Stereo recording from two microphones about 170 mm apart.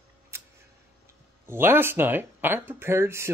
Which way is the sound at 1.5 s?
15° right (ahead or behind).